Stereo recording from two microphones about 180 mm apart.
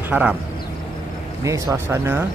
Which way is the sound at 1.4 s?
15° right (ahead or behind).